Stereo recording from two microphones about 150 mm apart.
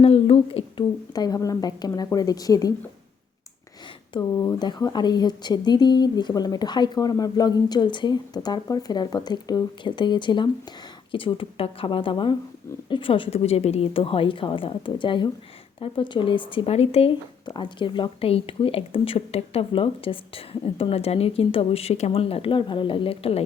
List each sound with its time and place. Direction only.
0.0 s speech: 40° left (ahead or behind)
1.1 s a woman's voice: 25° left (ahead or behind)
4.1 s a woman's voice: 25° left (ahead or behind); by 23.4 s 40° left (ahead or behind)